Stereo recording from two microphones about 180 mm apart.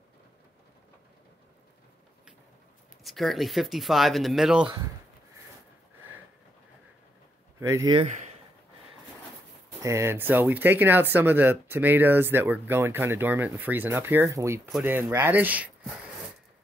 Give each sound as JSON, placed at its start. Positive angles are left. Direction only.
{"t": 3.0, "sound": "speech", "side_deg": 0}
{"t": 7.6, "sound": "speech", "side_deg": -15}
{"t": 8.0, "sound": "speech", "side_deg": -40}
{"t": 9.8, "sound": "speech", "side_deg": -15}